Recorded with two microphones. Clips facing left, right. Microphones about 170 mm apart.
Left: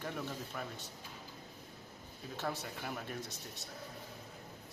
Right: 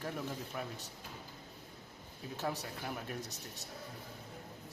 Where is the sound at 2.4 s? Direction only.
10° right (ahead or behind).